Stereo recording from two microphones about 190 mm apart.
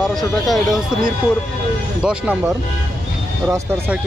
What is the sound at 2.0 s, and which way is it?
Speech, 5° right (ahead or behind).